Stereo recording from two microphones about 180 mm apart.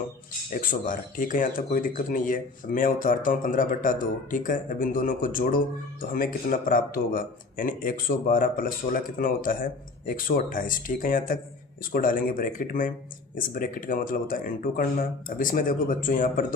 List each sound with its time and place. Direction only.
0.6 s speech: 50° left (ahead or behind)